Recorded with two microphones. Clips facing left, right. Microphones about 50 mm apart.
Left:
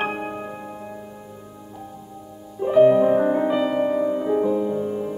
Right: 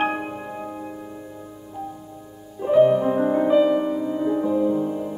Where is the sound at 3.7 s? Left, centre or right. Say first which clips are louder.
Left 2 dB; centre.